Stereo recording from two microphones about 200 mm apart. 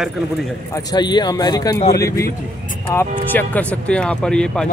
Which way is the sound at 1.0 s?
20° left (ahead or behind).